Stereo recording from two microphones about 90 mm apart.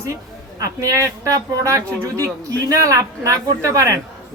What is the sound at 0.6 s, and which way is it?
Speech, 40° right (ahead or behind).